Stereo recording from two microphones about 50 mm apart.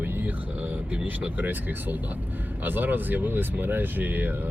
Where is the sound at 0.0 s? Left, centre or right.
Right.